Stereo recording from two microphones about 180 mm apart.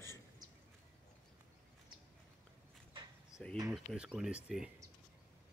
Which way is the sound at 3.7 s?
Centre (ahead or behind).